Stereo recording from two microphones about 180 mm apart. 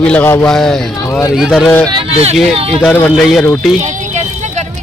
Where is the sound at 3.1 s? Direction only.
Centre (ahead or behind).